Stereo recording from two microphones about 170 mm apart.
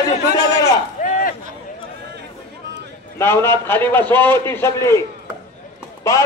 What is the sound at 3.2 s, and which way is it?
A man's voice, 15° left (ahead or behind).